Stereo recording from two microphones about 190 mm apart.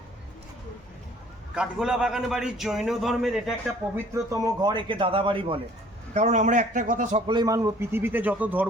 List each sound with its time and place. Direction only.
1.5 s a man's voice: 5° right (ahead or behind)
3.9 s a man's voice: 15° right (ahead or behind); by 7.2 s 40° right (ahead or behind)
7.3 s a man's voice: 20° right (ahead or behind)